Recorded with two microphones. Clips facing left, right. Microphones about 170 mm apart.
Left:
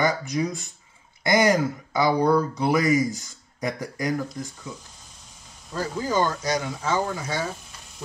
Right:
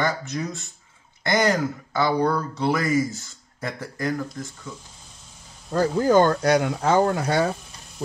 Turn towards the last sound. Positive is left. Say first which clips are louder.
# right 7 dB
turn(degrees=-65)  # may be behind; listen again after turning